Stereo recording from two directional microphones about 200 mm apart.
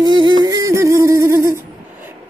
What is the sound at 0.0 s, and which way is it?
Speech, 20° right (ahead or behind).